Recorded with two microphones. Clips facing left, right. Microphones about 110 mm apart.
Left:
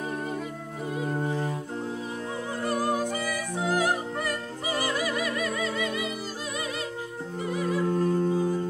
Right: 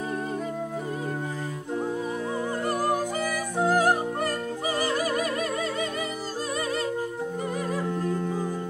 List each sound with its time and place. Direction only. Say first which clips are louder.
2.6 s music: left 1 dB; 45° right (ahead or behind)